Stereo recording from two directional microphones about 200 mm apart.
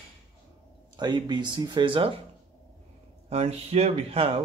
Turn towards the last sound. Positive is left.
turn(degrees=-30)  # may be behind; listen again after turning